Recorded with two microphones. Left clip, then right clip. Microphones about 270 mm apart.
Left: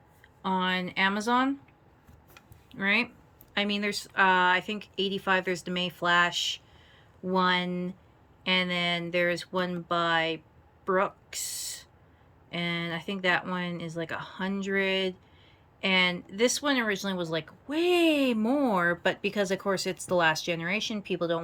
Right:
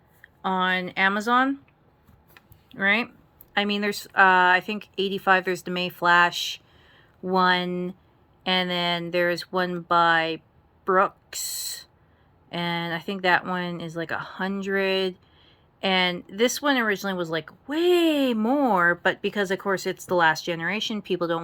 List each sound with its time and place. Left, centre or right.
0.4 s speech: centre
2.3 s a sound: centre
3.5 s speech: centre